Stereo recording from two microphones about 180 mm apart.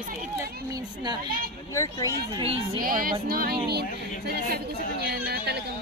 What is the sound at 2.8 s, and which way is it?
A woman's voice, 55° right (ahead or behind).